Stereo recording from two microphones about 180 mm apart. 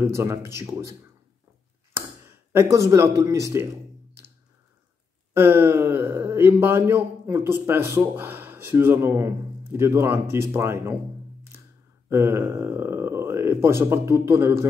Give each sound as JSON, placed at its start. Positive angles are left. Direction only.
{"t": 0.0, "sound": "speech", "side_deg": -15}
{"t": 2.0, "sound": "a sound", "side_deg": -15}
{"t": 5.3, "sound": "speech", "side_deg": -10}
{"t": 12.1, "sound": "speech", "side_deg": -15}